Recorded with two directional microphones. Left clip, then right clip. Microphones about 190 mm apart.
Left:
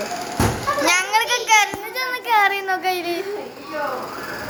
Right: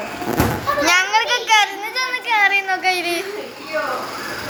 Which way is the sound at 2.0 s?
30° left (ahead or behind).